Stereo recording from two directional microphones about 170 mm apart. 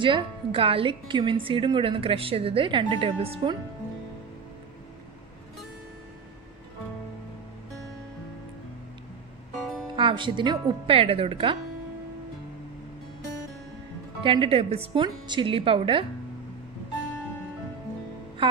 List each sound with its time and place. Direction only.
0.0 s a woman's voice: 30° right (ahead or behind)
9.9 s speech: 30° right (ahead or behind)
14.2 s a woman's voice: 30° right (ahead or behind)
18.4 s speech: 30° right (ahead or behind)